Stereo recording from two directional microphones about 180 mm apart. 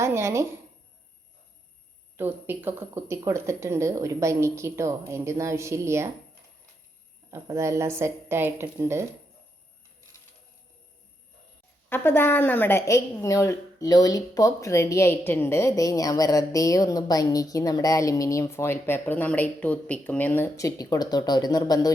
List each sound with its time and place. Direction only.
0.0 s speech: 15° right (ahead or behind)
2.1 s speech: 10° right (ahead or behind)
7.3 s speech: 15° right (ahead or behind)
11.9 s a woman's voice: 10° left (ahead or behind)